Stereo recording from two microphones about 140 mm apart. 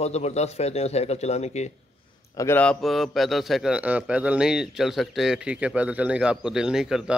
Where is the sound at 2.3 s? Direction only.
20° left (ahead or behind).